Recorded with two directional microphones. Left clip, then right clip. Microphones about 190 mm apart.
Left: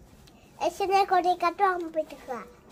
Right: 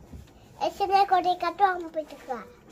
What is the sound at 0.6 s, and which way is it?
A child's voice, 25° left (ahead or behind).